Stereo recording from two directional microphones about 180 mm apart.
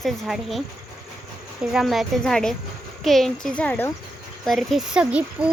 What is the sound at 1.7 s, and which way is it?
Speech, centre (ahead or behind).